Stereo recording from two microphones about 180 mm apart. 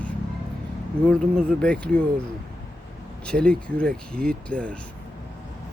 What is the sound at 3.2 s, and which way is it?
Speech, 5° left (ahead or behind).